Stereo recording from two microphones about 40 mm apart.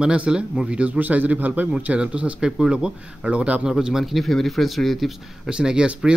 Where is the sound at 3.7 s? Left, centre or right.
Centre.